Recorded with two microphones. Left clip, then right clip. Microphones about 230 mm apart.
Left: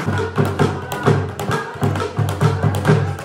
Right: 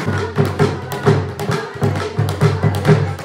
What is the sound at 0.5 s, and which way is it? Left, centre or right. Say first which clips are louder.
Music: right 1 dB; centre.